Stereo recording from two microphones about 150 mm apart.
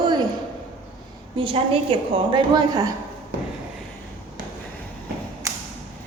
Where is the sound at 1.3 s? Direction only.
35° right (ahead or behind).